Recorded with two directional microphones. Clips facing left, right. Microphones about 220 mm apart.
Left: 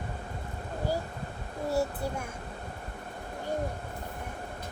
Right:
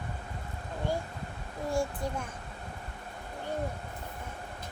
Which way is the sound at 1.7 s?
5° left (ahead or behind).